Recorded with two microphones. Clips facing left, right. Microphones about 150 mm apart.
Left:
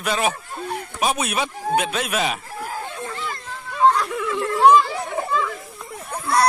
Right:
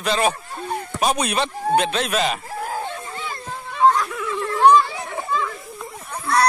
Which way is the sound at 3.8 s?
Centre (ahead or behind).